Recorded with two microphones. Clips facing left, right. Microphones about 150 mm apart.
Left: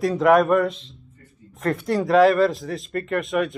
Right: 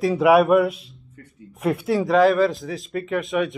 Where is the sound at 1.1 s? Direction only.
80° right.